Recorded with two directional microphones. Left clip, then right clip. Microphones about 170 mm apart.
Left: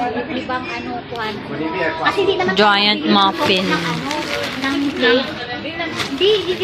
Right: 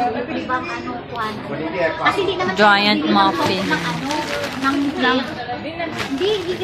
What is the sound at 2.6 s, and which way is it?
A woman's voice, 20° left (ahead or behind).